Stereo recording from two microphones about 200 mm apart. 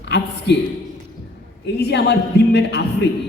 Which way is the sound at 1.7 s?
55° left (ahead or behind).